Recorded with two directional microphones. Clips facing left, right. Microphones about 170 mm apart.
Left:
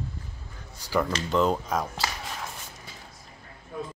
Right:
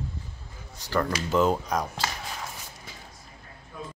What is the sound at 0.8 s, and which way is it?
Speech, 10° left (ahead or behind).